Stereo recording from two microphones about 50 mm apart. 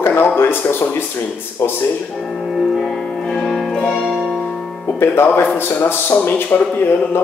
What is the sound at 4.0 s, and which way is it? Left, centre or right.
Music, centre.